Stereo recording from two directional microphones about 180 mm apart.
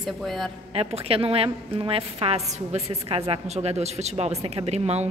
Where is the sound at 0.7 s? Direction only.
35° right (ahead or behind).